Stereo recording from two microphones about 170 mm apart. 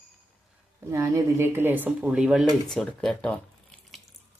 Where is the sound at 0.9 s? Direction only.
15° right (ahead or behind); by 3.4 s 5° left (ahead or behind).